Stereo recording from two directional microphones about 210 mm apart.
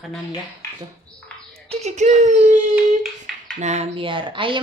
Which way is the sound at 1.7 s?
30° right (ahead or behind).